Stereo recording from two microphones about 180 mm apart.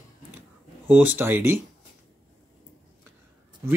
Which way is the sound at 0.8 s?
10° right (ahead or behind).